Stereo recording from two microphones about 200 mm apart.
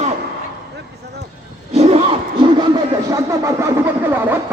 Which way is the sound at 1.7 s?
30° right (ahead or behind).